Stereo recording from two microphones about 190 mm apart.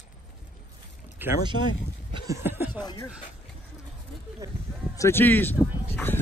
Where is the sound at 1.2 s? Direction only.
10° right (ahead or behind).